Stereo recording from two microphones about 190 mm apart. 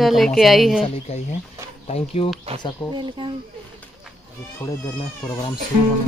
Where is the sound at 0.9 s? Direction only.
35° left (ahead or behind).